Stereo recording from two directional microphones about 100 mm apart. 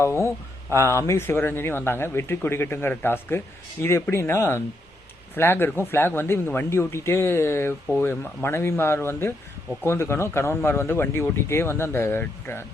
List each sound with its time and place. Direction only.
0.0 s speech: 30° left (ahead or behind)